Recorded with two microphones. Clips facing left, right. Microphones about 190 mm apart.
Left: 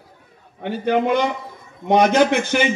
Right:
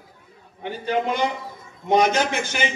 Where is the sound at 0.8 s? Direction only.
60° left (ahead or behind).